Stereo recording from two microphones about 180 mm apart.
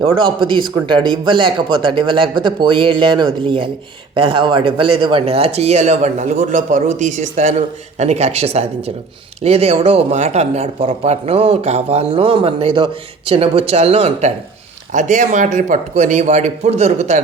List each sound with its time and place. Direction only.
0.2 s speech: 25° right (ahead or behind)